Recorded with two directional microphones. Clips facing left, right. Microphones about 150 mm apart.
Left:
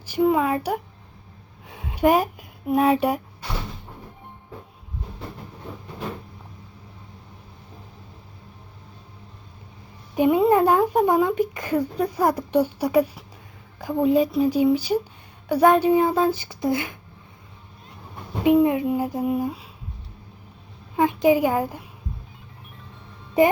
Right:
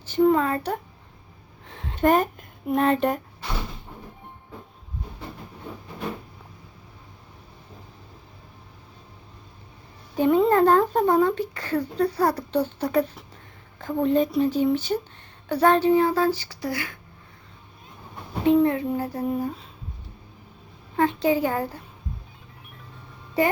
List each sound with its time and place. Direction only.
0.0 s speech: 10° left (ahead or behind)
1.6 s a sound: 10° left (ahead or behind)
10.2 s speech: 10° left (ahead or behind)
18.4 s speech: 10° left (ahead or behind)
20.9 s speech: 10° left (ahead or behind)